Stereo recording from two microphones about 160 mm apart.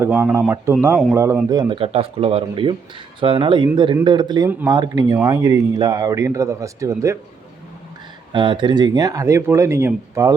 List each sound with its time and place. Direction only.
0.0 s speech: 15° right (ahead or behind)
1.8 s speech: 35° right (ahead or behind); by 7.2 s 20° right (ahead or behind)
8.3 s speech: 30° right (ahead or behind)